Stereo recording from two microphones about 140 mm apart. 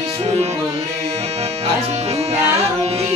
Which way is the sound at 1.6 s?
50° right (ahead or behind).